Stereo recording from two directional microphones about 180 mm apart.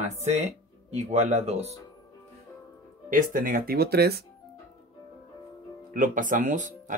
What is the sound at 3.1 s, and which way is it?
Speech, 50° right (ahead or behind).